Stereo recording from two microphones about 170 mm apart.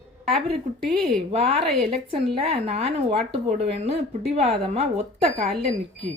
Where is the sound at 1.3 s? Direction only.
35° right (ahead or behind).